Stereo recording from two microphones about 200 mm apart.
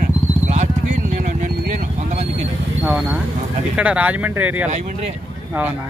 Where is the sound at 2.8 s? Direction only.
5° right (ahead or behind).